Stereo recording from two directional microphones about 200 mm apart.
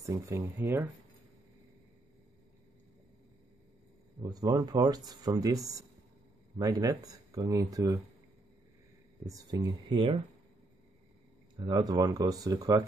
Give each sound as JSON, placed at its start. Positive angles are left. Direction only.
{"t": 0.0, "sound": "speech", "side_deg": -15}
{"t": 4.2, "sound": "speech", "side_deg": -20}
{"t": 9.2, "sound": "speech", "side_deg": -15}
{"t": 11.5, "sound": "speech", "side_deg": -20}